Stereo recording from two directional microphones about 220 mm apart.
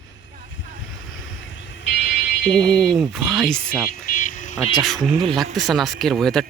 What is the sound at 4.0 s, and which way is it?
Vehicle, 40° left (ahead or behind).